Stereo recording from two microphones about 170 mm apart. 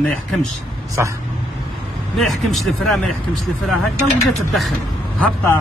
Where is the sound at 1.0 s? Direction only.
15° right (ahead or behind).